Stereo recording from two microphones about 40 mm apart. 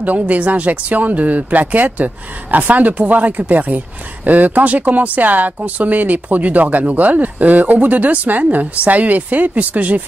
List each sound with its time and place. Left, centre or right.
0.0 s speech: right